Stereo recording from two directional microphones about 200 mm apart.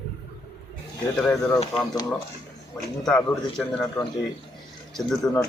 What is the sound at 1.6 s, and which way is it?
Speech, 25° left (ahead or behind).